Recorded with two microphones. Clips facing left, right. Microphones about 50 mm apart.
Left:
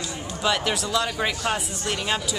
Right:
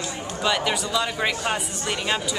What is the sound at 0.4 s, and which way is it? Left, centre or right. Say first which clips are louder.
Speech: right 1 dB; centre.